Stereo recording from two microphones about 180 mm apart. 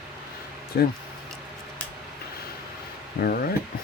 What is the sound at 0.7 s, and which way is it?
Speech, 60° left (ahead or behind).